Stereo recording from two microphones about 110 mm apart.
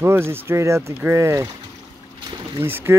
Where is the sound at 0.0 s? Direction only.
20° right (ahead or behind).